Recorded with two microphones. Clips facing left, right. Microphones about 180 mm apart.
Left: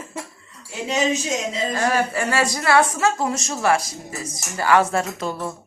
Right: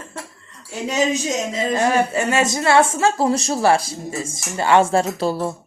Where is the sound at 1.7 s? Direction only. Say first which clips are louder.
Right 4 dB; 20° right (ahead or behind).